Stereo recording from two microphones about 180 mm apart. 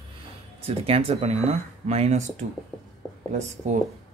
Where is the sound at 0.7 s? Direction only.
35° right (ahead or behind).